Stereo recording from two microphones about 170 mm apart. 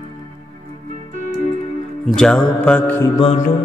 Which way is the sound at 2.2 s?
5° left (ahead or behind).